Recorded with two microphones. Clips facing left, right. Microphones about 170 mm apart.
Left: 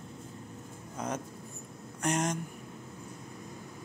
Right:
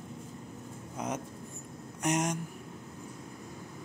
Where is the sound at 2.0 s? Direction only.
15° right (ahead or behind).